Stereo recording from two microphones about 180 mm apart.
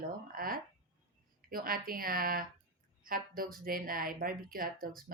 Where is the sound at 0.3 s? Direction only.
55° right (ahead or behind).